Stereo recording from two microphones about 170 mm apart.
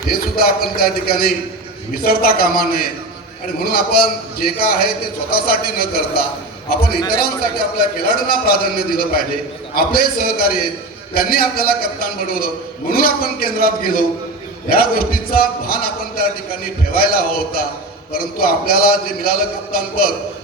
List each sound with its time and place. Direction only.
0.1 s a man's voice: 60° left (ahead or behind)